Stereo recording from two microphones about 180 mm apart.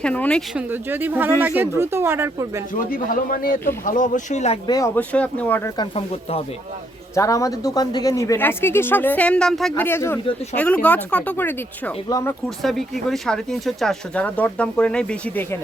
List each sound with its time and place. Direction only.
0.0 s speech: 5° left (ahead or behind)
0.5 s speech: 10° right (ahead or behind)
2.7 s speech: 50° left (ahead or behind)
4.6 s speech: 20° left (ahead or behind)
4.9 s speech: 5° left (ahead or behind)
7.2 s speech: 20° left (ahead or behind)
12.6 s speech: centre (ahead or behind)